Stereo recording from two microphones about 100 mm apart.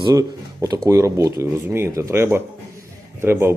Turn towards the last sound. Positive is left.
turn(degrees=-25)  # may be behind; listen again after turning